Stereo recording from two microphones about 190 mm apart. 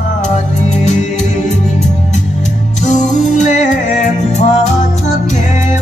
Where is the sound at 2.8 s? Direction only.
40° left (ahead or behind).